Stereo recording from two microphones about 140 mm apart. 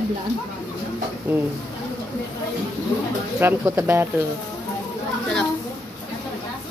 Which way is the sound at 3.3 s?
20° right (ahead or behind).